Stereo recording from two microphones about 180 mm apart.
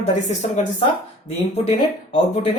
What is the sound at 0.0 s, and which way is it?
Speech, 40° left (ahead or behind).